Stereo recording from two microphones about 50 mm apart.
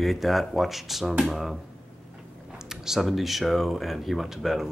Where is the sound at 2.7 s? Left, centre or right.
Centre.